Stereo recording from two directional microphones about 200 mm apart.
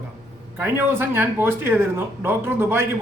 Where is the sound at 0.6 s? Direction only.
10° right (ahead or behind).